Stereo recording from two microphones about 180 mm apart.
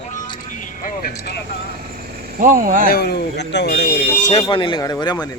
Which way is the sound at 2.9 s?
65° left (ahead or behind).